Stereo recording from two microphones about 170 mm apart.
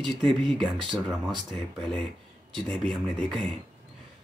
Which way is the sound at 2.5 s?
Centre (ahead or behind).